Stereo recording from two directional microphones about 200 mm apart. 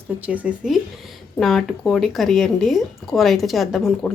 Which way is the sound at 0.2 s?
5° right (ahead or behind).